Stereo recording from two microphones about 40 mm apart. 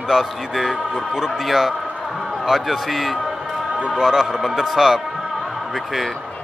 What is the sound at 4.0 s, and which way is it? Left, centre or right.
A man's voice, centre.